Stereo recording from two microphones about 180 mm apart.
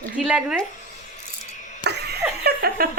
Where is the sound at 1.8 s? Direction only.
65° right (ahead or behind).